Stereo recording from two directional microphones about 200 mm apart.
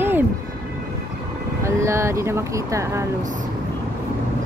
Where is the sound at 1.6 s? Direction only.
15° right (ahead or behind).